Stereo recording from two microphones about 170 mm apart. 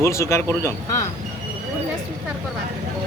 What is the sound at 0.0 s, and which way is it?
Speech, 15° left (ahead or behind).